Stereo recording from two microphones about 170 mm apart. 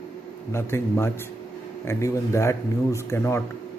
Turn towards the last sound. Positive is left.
turn(degrees=15)  # may be behind; listen again after turning